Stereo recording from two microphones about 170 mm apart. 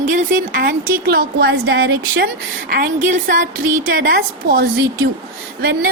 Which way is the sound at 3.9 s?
60° right (ahead or behind).